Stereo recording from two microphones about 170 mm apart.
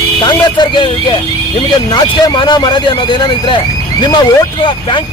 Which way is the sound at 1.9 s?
25° left (ahead or behind).